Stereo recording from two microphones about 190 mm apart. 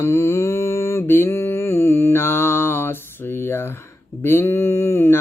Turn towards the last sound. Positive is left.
turn(degrees=10)  # may be behind; listen again after turning